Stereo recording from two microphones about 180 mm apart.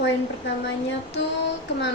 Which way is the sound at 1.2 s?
85° left.